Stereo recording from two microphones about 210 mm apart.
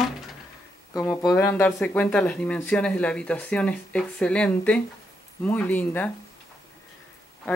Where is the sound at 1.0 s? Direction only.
15° left (ahead or behind).